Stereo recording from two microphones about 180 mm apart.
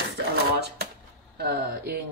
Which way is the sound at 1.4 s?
60° right (ahead or behind).